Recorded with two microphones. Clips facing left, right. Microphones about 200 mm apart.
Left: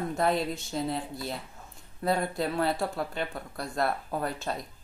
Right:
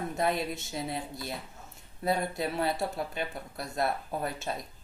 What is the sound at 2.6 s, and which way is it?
Speech, 20° right (ahead or behind).